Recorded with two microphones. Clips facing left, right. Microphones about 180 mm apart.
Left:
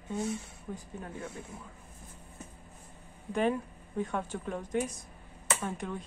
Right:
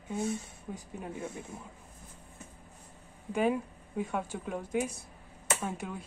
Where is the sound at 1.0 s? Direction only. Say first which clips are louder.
Right 5 dB; 15° right (ahead or behind).